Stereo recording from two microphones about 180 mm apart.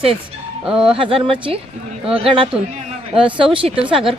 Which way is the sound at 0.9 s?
30° right (ahead or behind).